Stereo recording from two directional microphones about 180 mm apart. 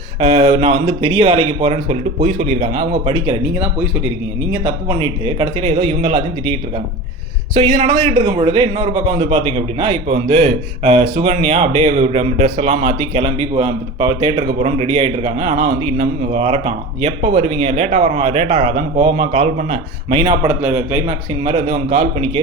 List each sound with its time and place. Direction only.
0.2 s a man's voice: 35° right (ahead or behind)
4.9 s a man's voice: 30° right (ahead or behind)
20.5 s speech: 5° right (ahead or behind)
21.4 s a man's voice: 35° right (ahead or behind)